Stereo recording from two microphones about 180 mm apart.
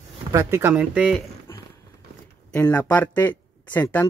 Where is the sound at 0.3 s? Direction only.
15° right (ahead or behind).